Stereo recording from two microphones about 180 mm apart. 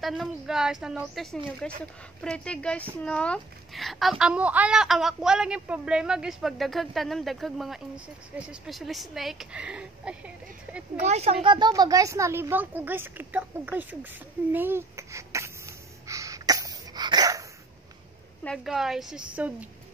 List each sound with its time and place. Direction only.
0.0 s a child's voice: centre (ahead or behind)
11.0 s speech: 35° right (ahead or behind)
11.4 s speech: 25° right (ahead or behind); by 13.9 s 10° right (ahead or behind)
14.5 s a sound: 10° right (ahead or behind)
18.4 s a child's voice: centre (ahead or behind)